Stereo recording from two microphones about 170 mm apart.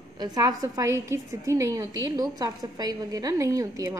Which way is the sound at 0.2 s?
20° right (ahead or behind).